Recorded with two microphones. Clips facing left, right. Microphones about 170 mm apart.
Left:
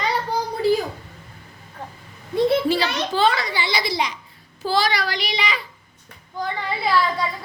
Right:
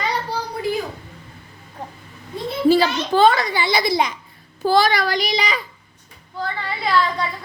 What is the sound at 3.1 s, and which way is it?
A woman's voice, 50° right (ahead or behind).